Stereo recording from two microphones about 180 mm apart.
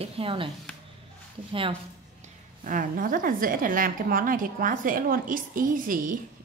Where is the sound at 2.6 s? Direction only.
50° right (ahead or behind).